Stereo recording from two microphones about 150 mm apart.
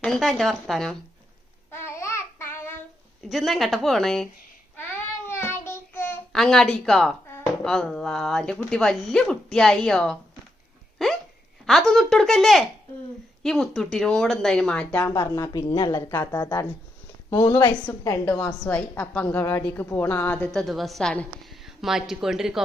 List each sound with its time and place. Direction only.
0.0 s speech: centre (ahead or behind)
2.0 s child singing: 20° left (ahead or behind)
3.2 s speech: centre (ahead or behind)
5.2 s child singing: 15° left (ahead or behind)
6.3 s speech: 5° left (ahead or behind)
10.9 s hiccup: centre (ahead or behind)
11.6 s speech: centre (ahead or behind)
14.9 s speech: 20° left (ahead or behind)
16.0 s a woman's voice: 15° left (ahead or behind)
17.2 s speech: 30° left (ahead or behind)
18.6 s a woman's voice: 10° left (ahead or behind)